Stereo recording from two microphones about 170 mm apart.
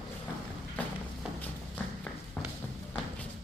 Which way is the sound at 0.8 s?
10° left (ahead or behind).